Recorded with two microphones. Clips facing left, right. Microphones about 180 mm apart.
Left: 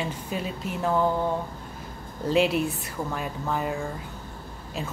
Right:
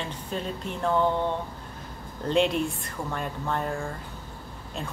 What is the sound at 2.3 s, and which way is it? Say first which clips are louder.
Speech: left 1 dB; 5° left (ahead or behind).